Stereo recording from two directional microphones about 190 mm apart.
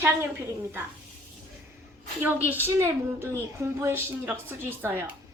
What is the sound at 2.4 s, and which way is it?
A woman's voice, 10° right (ahead or behind).